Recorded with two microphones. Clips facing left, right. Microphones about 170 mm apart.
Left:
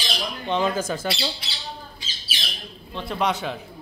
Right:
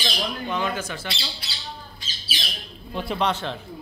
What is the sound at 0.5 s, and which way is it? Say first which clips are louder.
Speech: left 7 dB; 35° left (ahead or behind).